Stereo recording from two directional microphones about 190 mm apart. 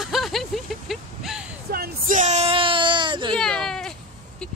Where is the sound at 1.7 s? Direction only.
45° right (ahead or behind); by 3.4 s 25° right (ahead or behind).